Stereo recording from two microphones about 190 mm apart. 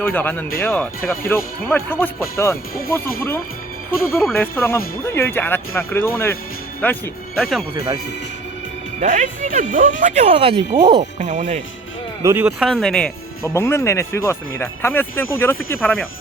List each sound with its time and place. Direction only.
0.0 s speech: 10° left (ahead or behind)
9.0 s speech: 40° right (ahead or behind); by 11.0 s 20° right (ahead or behind)
11.2 s speech: 40° right (ahead or behind)
12.2 s speech: 10° right (ahead or behind); by 16.0 s 10° left (ahead or behind)